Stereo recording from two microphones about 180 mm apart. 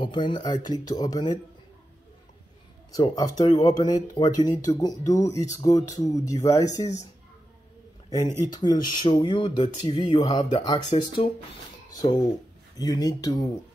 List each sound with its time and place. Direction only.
0.3 s speech: 20° left (ahead or behind)
3.0 s speech: 20° left (ahead or behind)
8.1 s speech: 20° left (ahead or behind)